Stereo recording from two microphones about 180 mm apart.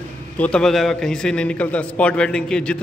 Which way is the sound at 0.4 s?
5° left (ahead or behind).